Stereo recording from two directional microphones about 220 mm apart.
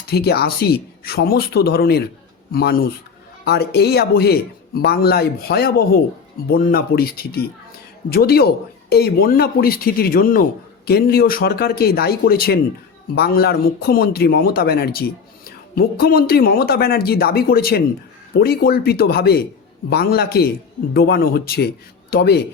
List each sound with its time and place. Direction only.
0.1 s speech: 45° left (ahead or behind)